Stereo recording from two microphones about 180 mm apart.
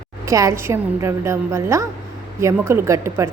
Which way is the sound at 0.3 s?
15° right (ahead or behind).